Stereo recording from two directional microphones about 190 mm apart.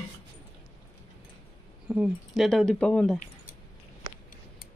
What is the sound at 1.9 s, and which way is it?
Speech, 5° right (ahead or behind).